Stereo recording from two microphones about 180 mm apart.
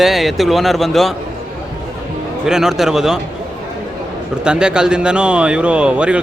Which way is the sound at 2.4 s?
5° right (ahead or behind).